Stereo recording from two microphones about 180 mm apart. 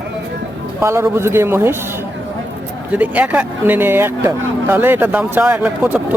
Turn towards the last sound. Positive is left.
turn(degrees=-10)  # may be behind; listen again after turning